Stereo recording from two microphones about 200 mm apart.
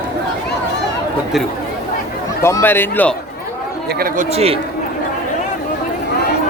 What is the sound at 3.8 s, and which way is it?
Speech, 50° right (ahead or behind).